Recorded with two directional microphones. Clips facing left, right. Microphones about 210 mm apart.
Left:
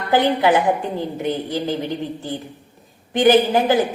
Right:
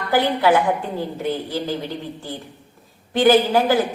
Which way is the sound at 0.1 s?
20° left (ahead or behind).